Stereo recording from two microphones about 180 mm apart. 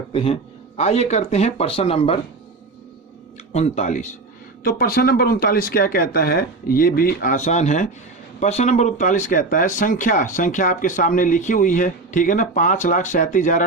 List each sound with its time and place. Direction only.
0.1 s a man's voice: 30° left (ahead or behind)
3.5 s speech: 40° left (ahead or behind)
4.6 s speech: 55° left (ahead or behind)